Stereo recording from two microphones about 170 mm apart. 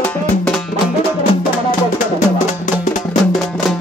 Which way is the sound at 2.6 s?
50° left (ahead or behind).